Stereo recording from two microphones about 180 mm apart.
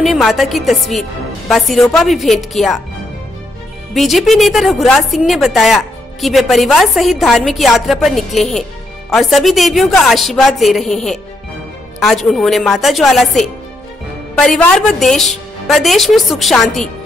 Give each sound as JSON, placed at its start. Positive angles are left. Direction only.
{"t": 0.0, "sound": "a woman's voice", "side_deg": 0}
{"t": 3.9, "sound": "a woman's voice", "side_deg": 0}